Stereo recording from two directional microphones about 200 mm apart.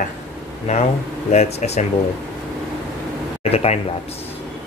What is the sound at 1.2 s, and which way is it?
Speech, 35° left (ahead or behind).